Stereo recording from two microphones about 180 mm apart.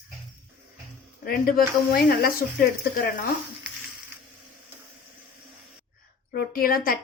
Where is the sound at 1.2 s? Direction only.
55° left (ahead or behind).